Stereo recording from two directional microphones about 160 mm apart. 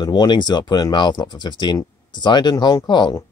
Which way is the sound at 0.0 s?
25° left (ahead or behind).